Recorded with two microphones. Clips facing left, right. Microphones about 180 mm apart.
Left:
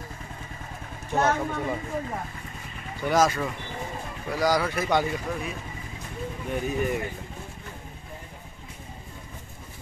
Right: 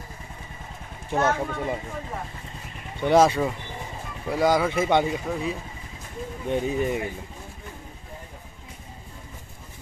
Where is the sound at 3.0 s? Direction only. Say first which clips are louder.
Right 4 dB; 30° right (ahead or behind).